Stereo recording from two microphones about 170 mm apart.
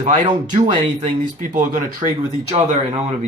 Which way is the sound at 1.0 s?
50° right (ahead or behind).